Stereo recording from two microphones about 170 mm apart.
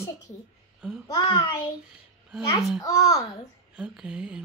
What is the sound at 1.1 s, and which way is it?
Speech, 20° left (ahead or behind).